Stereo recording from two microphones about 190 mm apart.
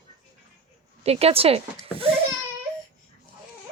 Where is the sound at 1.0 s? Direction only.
30° right (ahead or behind).